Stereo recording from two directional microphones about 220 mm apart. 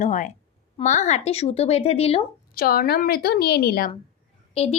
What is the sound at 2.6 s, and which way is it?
A woman's voice, 40° left (ahead or behind).